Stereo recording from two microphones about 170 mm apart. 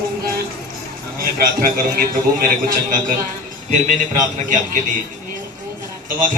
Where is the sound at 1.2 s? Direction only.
60° right (ahead or behind).